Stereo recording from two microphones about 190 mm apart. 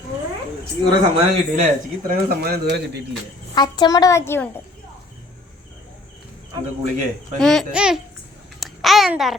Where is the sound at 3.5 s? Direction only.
20° left (ahead or behind).